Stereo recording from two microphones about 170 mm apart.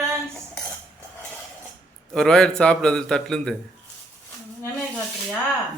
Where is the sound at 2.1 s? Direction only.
5° left (ahead or behind).